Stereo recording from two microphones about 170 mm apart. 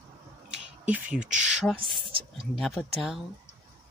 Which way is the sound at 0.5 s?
5° right (ahead or behind).